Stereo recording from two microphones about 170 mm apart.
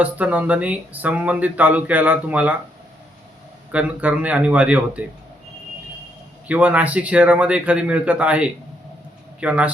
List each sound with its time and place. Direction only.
0.0 s speech: 10° right (ahead or behind)
3.7 s speech: 10° right (ahead or behind)
6.5 s speech: 10° right (ahead or behind)